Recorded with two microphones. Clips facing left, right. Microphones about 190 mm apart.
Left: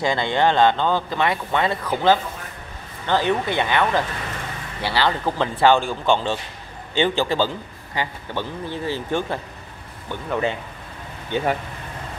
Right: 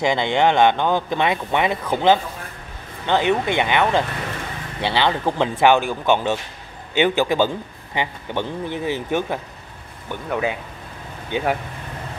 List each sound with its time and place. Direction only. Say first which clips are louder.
0.0 s a man's voice: right 2 dB; 20° right (ahead or behind)